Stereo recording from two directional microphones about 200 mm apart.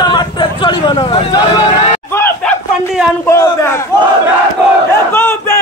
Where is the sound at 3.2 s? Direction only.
15° left (ahead or behind).